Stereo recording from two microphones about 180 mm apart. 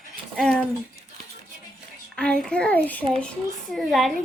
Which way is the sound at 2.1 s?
5° left (ahead or behind).